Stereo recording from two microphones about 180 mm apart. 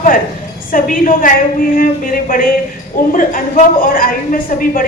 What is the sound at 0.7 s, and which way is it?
A woman's voice, 50° left (ahead or behind).